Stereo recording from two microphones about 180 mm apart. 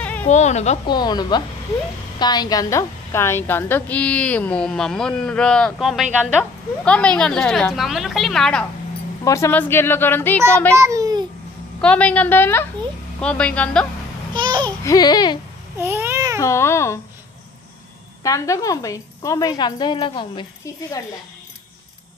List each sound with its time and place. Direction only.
0.0 s a sound: 10° left (ahead or behind)
0.3 s speech: 40° left (ahead or behind)
0.8 s a woman's voice: 25° left (ahead or behind); by 8.6 s 5° left (ahead or behind)
9.2 s a woman's voice: 15° left (ahead or behind)
10.8 s babbling: 20° right (ahead or behind)
11.8 s a woman's voice: 5° left (ahead or behind)
14.3 s babbling: 25° right (ahead or behind)
14.8 s a woman's voice: 20° left (ahead or behind)
15.8 s babbling: 10° right (ahead or behind)
16.3 s a woman's voice: 15° left (ahead or behind)
18.2 s a woman's voice: 20° left (ahead or behind)